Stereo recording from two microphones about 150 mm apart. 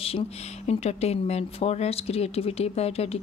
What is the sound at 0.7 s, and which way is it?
A woman's voice, 45° left (ahead or behind).